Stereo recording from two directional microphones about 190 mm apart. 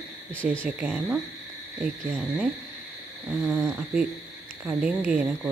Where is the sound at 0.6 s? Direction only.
5° right (ahead or behind).